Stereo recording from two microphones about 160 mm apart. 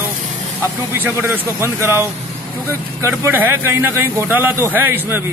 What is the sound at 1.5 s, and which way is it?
Speech, 15° right (ahead or behind).